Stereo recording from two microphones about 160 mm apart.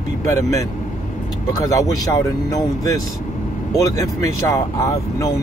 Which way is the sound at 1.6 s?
20° left (ahead or behind).